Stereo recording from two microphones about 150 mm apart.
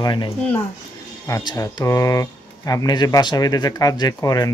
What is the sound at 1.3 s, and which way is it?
Speech, 25° left (ahead or behind).